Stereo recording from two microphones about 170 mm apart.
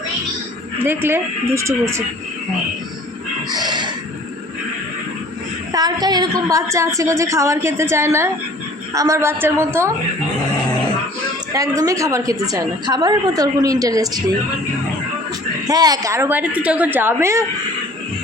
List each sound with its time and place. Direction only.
0.9 s a woman's voice: 15° right (ahead or behind)
3.5 s a sound: 25° right (ahead or behind)
5.7 s a woman's voice: 25° right (ahead or behind)
11.5 s a woman's voice: 20° right (ahead or behind)
15.6 s a woman's voice: 20° right (ahead or behind)